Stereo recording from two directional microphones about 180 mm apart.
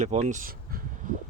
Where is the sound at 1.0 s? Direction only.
45° right (ahead or behind).